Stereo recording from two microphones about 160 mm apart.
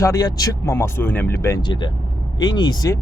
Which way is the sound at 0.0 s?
25° left (ahead or behind).